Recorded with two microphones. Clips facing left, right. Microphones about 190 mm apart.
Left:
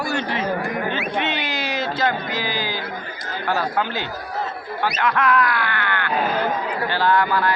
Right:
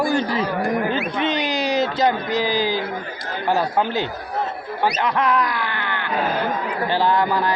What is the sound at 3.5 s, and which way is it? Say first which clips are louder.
Speech: right 3 dB; 20° right (ahead or behind).